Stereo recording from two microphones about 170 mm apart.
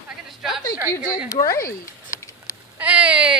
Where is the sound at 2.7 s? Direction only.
10° right (ahead or behind).